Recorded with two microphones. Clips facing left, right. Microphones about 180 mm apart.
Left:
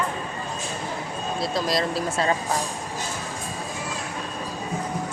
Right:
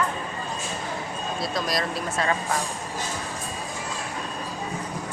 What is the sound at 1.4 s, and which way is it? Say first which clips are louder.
Speech: left 3 dB; 25° left (ahead or behind).